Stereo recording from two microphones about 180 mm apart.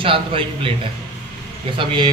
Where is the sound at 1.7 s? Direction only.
25° right (ahead or behind).